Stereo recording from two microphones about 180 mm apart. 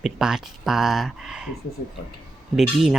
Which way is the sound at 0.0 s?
Centre (ahead or behind).